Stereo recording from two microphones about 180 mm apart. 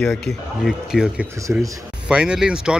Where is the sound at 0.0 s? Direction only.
Centre (ahead or behind).